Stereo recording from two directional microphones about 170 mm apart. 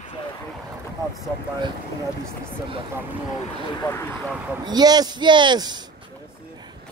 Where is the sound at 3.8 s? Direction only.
15° left (ahead or behind).